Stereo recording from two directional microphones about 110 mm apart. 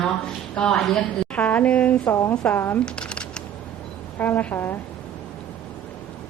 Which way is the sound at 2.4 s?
15° left (ahead or behind).